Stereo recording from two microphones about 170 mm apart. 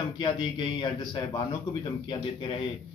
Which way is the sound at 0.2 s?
30° left (ahead or behind).